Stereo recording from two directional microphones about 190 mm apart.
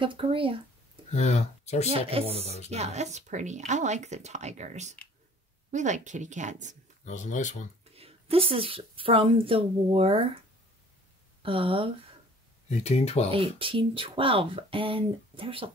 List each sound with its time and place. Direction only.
0.0 s a woman's voice: 30° right (ahead or behind)
1.1 s speech: 35° left (ahead or behind)
1.9 s speech: 30° right (ahead or behind)
2.4 s speech: 35° left (ahead or behind)
2.7 s speech: 35° right (ahead or behind)
7.1 s speech: 40° left (ahead or behind)
7.9 s a woman's voice: 30° right (ahead or behind)
11.4 s a woman's voice: 30° right (ahead or behind)
12.6 s speech: 35° left (ahead or behind)
13.3 s a woman's voice: 30° right (ahead or behind)